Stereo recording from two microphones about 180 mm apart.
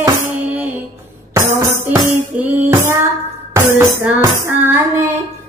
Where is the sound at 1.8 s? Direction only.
10° right (ahead or behind).